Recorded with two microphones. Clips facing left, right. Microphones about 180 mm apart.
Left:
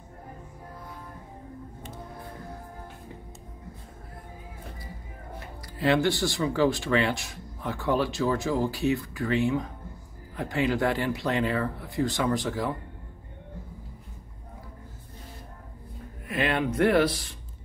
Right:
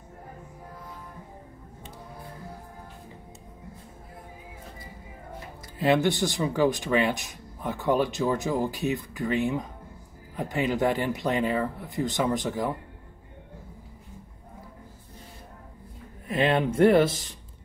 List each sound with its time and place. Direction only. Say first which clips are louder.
5.8 s speech: right 1 dB; 20° right (ahead or behind)
16.3 s speech: right 3 dB; 25° right (ahead or behind)